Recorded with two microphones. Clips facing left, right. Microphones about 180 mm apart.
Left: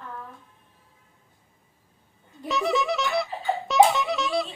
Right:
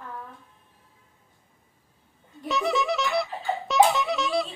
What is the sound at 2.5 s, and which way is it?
Music, centre (ahead or behind).